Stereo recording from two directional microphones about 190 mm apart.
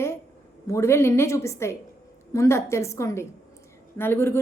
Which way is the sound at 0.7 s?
15° left (ahead or behind).